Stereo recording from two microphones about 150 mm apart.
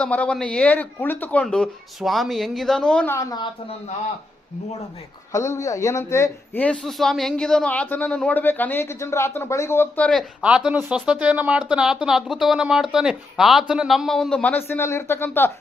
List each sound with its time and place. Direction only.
0.0 s a man's voice: 10° left (ahead or behind)
3.2 s a woman's voice: 25° left (ahead or behind)
5.3 s a man's voice: 20° left (ahead or behind)
10.4 s speech: 5° right (ahead or behind); by 15.5 s 15° left (ahead or behind)